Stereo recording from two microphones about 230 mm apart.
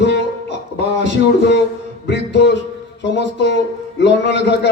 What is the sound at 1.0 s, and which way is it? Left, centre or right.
A man's voice, left.